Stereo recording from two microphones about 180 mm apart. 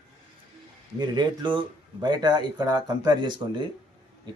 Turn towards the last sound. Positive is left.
turn(degrees=-25)  # may be behind; listen again after turning